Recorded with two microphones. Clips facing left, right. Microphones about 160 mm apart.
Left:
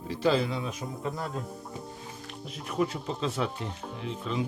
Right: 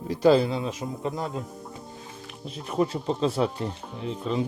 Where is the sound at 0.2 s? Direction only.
35° right (ahead or behind); by 1.4 s 20° right (ahead or behind).